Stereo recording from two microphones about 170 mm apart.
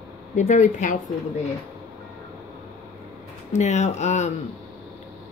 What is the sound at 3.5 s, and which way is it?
Speech, 40° left (ahead or behind).